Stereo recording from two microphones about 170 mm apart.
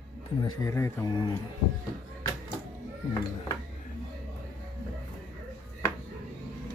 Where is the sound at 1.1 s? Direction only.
25° left (ahead or behind).